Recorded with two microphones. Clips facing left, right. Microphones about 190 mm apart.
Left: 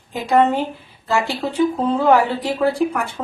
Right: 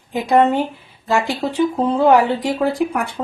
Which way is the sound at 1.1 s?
15° right (ahead or behind).